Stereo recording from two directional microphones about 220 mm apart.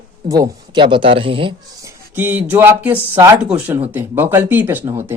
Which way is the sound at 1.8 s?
10° right (ahead or behind).